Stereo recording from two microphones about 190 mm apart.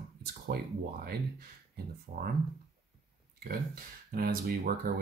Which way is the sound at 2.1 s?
65° right (ahead or behind).